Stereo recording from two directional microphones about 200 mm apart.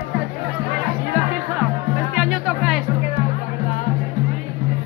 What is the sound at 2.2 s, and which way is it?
Music, centre (ahead or behind).